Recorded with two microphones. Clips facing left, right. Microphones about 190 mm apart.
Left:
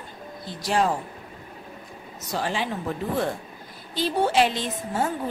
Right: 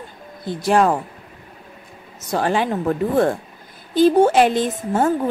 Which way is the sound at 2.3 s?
55° right (ahead or behind).